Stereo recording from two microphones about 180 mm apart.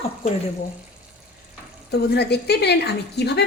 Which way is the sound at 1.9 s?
65° left (ahead or behind).